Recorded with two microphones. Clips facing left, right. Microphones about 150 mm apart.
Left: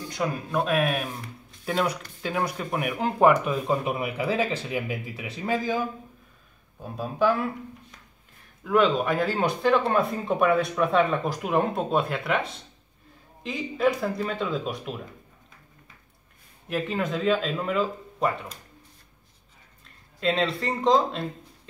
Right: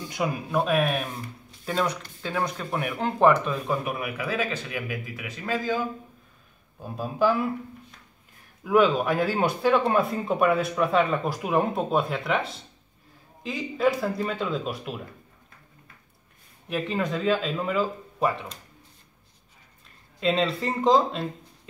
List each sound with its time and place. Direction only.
0.1 s speech: 10° right (ahead or behind); by 5.9 s 15° left (ahead or behind)
6.8 s speech: centre (ahead or behind)
8.6 s speech: centre (ahead or behind)
16.6 s speech: centre (ahead or behind)
20.2 s speech: centre (ahead or behind)